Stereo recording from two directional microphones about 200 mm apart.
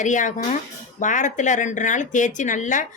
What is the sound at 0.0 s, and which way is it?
Speech, 40° left (ahead or behind).